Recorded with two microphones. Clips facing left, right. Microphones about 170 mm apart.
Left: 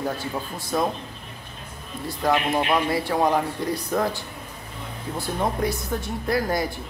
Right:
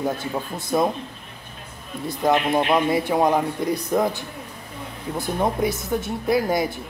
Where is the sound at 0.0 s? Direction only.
20° right (ahead or behind).